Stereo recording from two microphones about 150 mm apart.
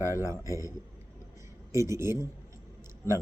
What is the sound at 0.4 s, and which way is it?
Speech, 20° right (ahead or behind).